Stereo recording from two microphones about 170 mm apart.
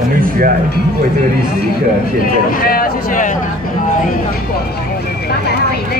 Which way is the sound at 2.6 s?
55° left (ahead or behind).